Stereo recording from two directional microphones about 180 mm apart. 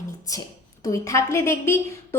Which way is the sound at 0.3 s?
20° left (ahead or behind).